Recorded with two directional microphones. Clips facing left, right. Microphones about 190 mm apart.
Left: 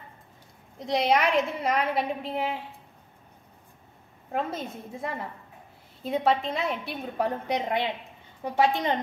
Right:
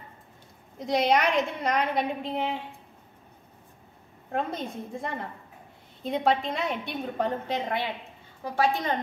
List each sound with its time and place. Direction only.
0.7 s a woman's voice: centre (ahead or behind)
4.3 s a woman's voice: 5° left (ahead or behind); by 8.9 s 20° left (ahead or behind)